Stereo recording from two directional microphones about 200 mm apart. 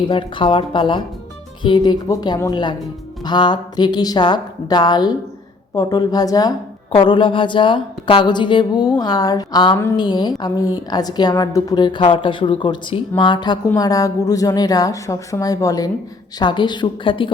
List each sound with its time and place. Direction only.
0.1 s speech: 25° left (ahead or behind)